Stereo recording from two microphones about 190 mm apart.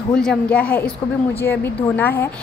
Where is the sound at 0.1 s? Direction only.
5° left (ahead or behind).